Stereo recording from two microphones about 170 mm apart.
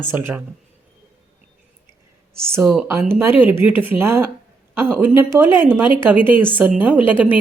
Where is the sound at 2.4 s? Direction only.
15° right (ahead or behind).